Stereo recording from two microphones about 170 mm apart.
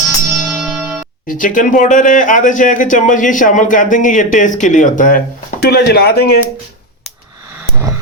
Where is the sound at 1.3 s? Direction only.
50° left (ahead or behind); by 6.4 s 70° left (ahead or behind).